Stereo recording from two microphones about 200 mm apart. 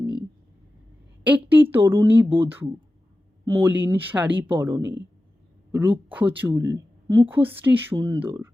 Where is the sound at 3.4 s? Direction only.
15° right (ahead or behind).